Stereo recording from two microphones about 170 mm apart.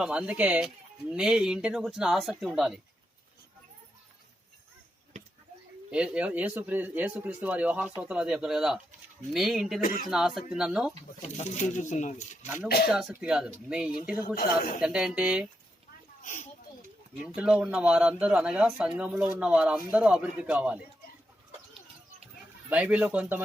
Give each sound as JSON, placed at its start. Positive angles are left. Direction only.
{"t": 0.0, "sound": "speech", "side_deg": -5}
{"t": 5.9, "sound": "speech", "side_deg": -5}
{"t": 11.2, "sound": "speech", "side_deg": 40}
{"t": 12.6, "sound": "speech", "side_deg": 60}
{"t": 12.9, "sound": "speech", "side_deg": -5}
{"t": 14.3, "sound": "speech", "side_deg": 55}
{"t": 14.8, "sound": "speech", "side_deg": -5}
{"t": 16.2, "sound": "speech", "side_deg": 45}
{"t": 17.2, "sound": "speech", "side_deg": -5}
{"t": 22.7, "sound": "speech", "side_deg": -10}